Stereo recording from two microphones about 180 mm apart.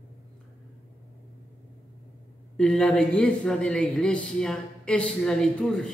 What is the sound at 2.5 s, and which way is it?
Speech, 5° left (ahead or behind).